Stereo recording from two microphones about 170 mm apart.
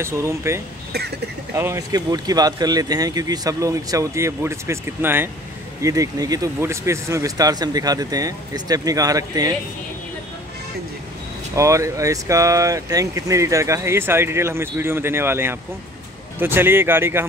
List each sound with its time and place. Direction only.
0.0 s speech: 15° right (ahead or behind)
11.5 s speech: 20° right (ahead or behind)